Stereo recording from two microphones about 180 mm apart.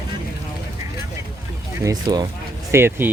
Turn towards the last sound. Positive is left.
turn(degrees=-15)  # may be behind; listen again after turning